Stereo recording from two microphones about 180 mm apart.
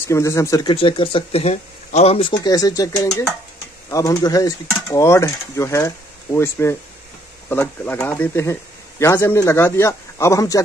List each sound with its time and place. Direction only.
0.1 s speech: 15° left (ahead or behind); by 2.3 s 35° left (ahead or behind)
2.4 s speech: 20° left (ahead or behind)